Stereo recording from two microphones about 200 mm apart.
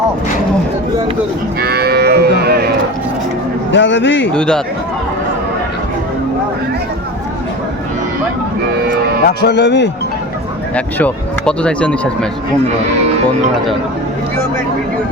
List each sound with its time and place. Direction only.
1.6 s moo: 50° right (ahead or behind)
3.7 s speech: 65° left (ahead or behind)
4.4 s speech: 5° left (ahead or behind)
9.4 s speech: 60° left (ahead or behind)
10.8 s speech: 5° left (ahead or behind)